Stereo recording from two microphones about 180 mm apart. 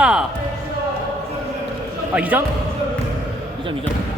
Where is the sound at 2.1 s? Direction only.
10° right (ahead or behind).